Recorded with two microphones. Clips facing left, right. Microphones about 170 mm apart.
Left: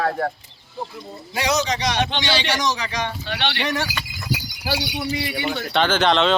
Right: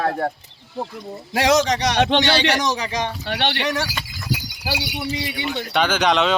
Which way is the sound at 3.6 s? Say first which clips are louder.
Right 1 dB; centre (ahead or behind).